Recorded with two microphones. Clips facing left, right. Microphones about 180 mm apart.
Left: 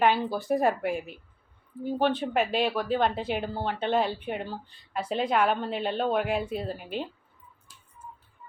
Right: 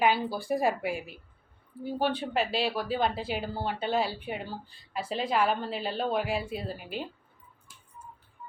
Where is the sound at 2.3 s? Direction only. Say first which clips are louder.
Left 3 dB; 45° left (ahead or behind).